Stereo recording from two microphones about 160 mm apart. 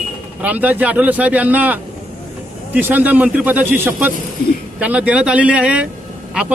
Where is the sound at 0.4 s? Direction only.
10° right (ahead or behind).